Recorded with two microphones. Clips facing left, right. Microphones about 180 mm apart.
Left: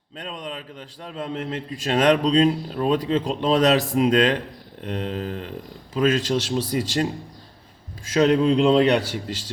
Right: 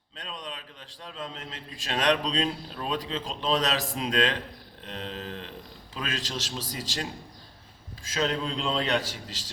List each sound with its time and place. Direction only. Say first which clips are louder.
1.0 s a man's voice: left 9 dB; 50° left (ahead or behind)